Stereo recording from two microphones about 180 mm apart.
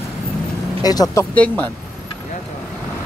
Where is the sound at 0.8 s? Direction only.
20° left (ahead or behind).